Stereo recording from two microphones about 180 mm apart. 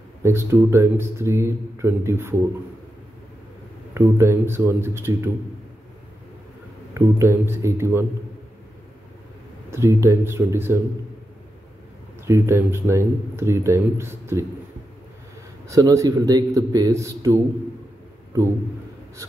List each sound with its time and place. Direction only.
0.2 s speech: 15° right (ahead or behind)
3.9 s speech: 15° right (ahead or behind)
6.9 s speech: 15° right (ahead or behind)
9.7 s speech: 15° right (ahead or behind)
12.3 s speech: 15° right (ahead or behind)
15.7 s speech: 20° right (ahead or behind)